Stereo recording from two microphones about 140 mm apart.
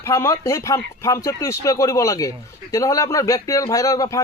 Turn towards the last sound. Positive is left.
turn(degrees=25)  # may be behind; listen again after turning